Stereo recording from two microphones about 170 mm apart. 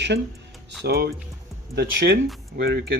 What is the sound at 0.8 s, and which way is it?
Speech, 70° right (ahead or behind).